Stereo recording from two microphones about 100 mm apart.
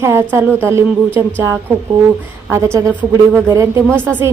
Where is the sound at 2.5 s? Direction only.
30° right (ahead or behind).